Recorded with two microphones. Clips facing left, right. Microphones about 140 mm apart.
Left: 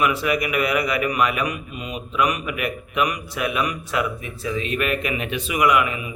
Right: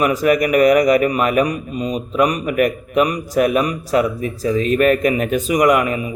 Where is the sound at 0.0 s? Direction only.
40° right (ahead or behind).